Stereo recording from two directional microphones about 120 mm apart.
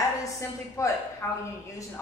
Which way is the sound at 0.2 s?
25° left (ahead or behind).